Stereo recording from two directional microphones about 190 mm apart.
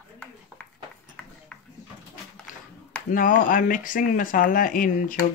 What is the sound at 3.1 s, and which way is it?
Speech, 45° left (ahead or behind).